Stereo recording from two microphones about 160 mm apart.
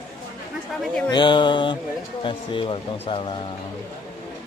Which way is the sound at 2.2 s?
30° left (ahead or behind).